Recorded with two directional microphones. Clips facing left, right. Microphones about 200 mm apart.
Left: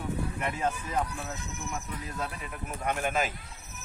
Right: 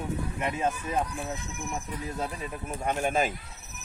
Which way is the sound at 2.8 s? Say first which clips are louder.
Right 3 dB; 30° right (ahead or behind).